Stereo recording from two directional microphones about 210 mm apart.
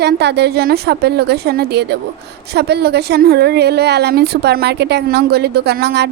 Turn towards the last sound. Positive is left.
turn(degrees=-50)  # may be behind; listen again after turning